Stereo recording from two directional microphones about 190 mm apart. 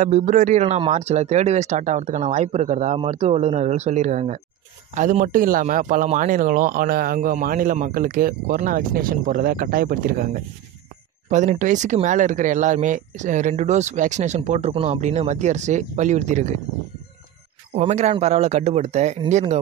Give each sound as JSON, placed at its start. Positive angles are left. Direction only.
{"t": 0.0, "sound": "a man's voice", "side_deg": -40}
{"t": 17.7, "sound": "speech", "side_deg": -35}